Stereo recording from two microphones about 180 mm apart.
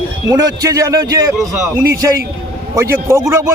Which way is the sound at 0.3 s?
20° right (ahead or behind).